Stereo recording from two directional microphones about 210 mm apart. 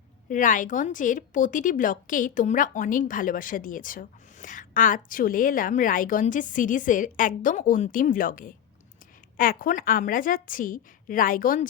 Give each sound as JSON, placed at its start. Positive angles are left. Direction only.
{"t": 0.3, "sound": "a woman's voice", "side_deg": 40}